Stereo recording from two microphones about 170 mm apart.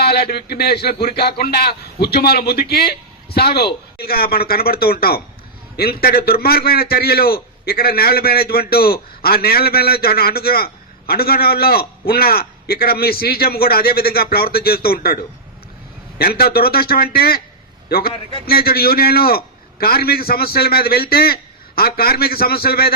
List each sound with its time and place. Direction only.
0.0 s a man's voice: 70° left (ahead or behind)